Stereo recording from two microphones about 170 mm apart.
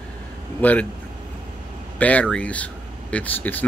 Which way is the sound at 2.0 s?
10° left (ahead or behind).